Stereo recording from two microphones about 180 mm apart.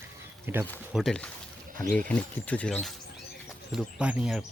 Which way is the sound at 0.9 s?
5° left (ahead or behind).